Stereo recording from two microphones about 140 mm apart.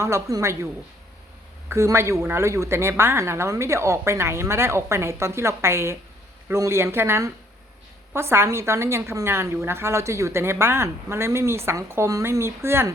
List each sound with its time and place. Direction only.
0.0 s a woman's voice: 20° right (ahead or behind)
1.7 s a woman's voice: 20° right (ahead or behind)